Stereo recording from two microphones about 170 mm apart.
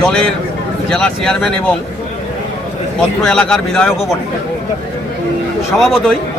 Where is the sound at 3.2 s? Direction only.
5° left (ahead or behind).